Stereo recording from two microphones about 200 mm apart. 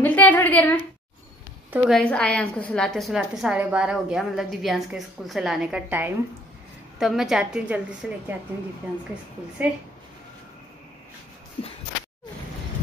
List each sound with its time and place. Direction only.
0.0 s a woman's voice: 10° left (ahead or behind)
9.6 s a woman's voice: 5° right (ahead or behind)
11.6 s a sound: 30° left (ahead or behind)